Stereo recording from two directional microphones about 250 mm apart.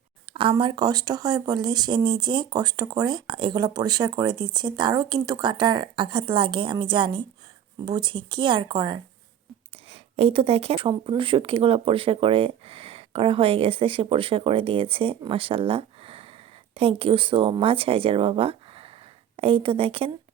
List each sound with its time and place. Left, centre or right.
0.3 s speech: centre